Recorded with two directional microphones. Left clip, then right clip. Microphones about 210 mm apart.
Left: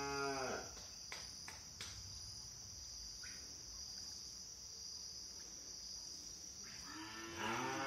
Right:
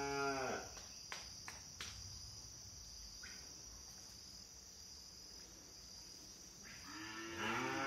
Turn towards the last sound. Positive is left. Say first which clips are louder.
# right 1 dB
turn(degrees=-50)  # may be behind; listen again after turning